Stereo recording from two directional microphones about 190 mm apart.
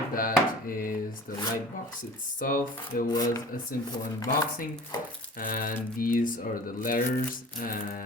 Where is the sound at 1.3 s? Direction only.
45° left (ahead or behind).